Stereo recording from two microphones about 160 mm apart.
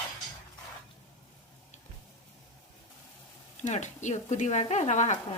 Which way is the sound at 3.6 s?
45° left (ahead or behind).